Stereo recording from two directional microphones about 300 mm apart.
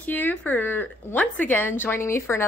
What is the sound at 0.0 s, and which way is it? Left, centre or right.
Speech, centre.